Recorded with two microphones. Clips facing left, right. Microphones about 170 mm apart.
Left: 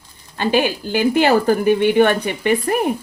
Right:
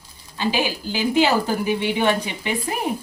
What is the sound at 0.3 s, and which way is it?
Speech, 55° left (ahead or behind).